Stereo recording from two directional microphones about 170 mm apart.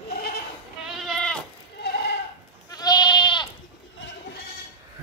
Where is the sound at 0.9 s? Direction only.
Centre (ahead or behind).